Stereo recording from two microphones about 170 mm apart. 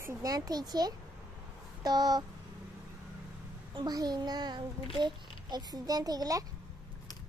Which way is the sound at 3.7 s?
25° right (ahead or behind).